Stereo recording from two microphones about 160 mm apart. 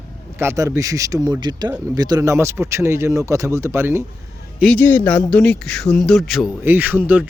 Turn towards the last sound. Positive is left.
turn(degrees=-10)  # may be behind; listen again after turning